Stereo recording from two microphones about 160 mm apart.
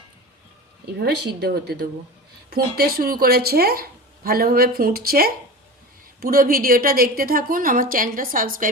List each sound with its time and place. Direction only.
0.9 s a woman's voice: 90° right; by 8.7 s 60° right (ahead or behind)